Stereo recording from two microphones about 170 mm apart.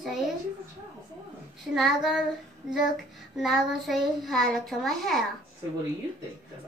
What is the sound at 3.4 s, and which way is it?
A child's voice, centre (ahead or behind).